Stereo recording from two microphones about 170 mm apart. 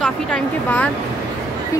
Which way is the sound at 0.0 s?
5° left (ahead or behind).